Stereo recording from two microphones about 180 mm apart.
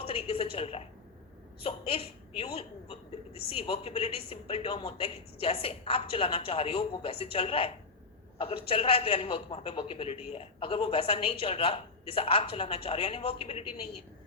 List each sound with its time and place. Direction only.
0.0 s a woman's voice: 30° left (ahead or behind)